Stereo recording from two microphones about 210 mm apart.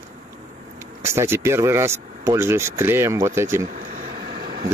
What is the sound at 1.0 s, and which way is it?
Speech, 10° right (ahead or behind).